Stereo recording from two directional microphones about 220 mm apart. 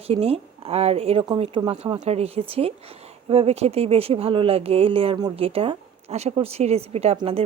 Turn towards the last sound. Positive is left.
turn(degrees=-25)  # may be behind; listen again after turning